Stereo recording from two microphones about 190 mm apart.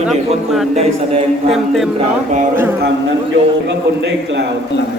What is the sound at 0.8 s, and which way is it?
Speech, 30° right (ahead or behind).